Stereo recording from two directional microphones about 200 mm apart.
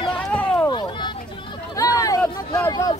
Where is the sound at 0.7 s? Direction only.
25° left (ahead or behind).